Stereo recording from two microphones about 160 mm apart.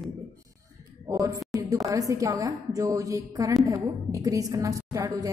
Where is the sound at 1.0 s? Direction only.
20° right (ahead or behind).